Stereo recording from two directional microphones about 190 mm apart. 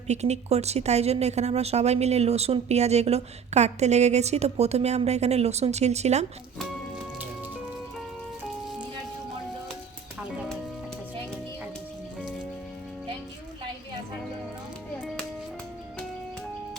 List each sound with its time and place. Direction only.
0.1 s speech: 35° right (ahead or behind)
6.6 s music: centre (ahead or behind)